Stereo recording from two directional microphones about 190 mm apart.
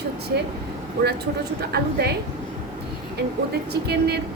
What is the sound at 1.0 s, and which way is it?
Speech, 55° right (ahead or behind).